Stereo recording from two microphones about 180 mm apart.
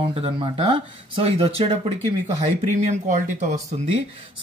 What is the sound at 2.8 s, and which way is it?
Speech, 40° right (ahead or behind).